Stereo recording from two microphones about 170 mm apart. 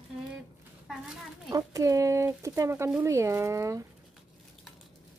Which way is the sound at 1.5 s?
20° right (ahead or behind).